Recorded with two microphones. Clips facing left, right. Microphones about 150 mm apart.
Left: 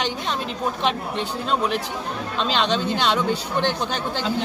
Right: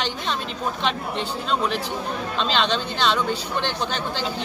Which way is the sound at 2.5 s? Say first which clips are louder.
Left 3 dB; 10° left (ahead or behind).